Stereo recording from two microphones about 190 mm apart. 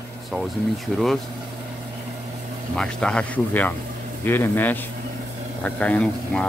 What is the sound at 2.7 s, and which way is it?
Speech, 5° left (ahead or behind).